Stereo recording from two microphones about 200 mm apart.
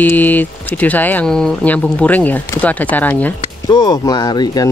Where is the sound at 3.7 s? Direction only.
20° left (ahead or behind).